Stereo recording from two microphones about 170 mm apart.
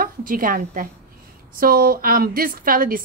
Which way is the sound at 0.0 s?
55° right (ahead or behind).